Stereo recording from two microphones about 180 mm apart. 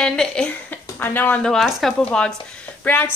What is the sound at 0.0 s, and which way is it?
A woman's voice, 5° left (ahead or behind).